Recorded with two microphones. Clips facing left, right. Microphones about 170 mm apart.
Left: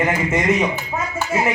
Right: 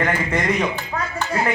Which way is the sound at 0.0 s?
5° left (ahead or behind).